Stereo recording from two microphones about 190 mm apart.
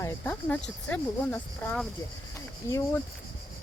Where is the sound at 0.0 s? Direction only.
10° left (ahead or behind).